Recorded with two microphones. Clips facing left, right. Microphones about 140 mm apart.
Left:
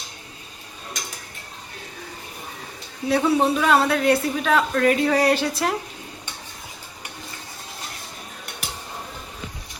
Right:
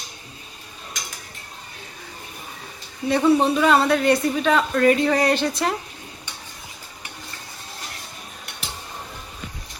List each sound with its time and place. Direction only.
3.1 s a man's voice: 5° left (ahead or behind)